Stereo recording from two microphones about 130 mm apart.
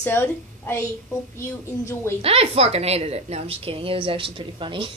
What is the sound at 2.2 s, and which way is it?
A woman's voice, 50° right (ahead or behind).